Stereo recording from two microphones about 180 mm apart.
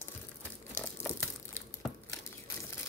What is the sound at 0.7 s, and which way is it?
Crumpling, 15° left (ahead or behind).